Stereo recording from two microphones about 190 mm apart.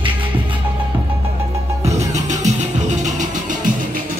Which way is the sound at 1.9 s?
35° right (ahead or behind).